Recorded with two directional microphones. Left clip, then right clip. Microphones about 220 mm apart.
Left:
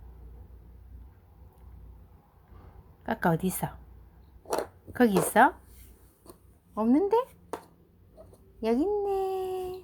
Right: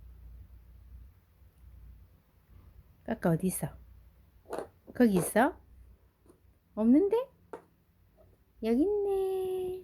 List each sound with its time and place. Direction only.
3.1 s a woman's voice: 15° right (ahead or behind)
4.9 s a woman's voice: 15° right (ahead or behind)
6.7 s a woman's voice: 20° right (ahead or behind)
8.6 s speech: 15° right (ahead or behind)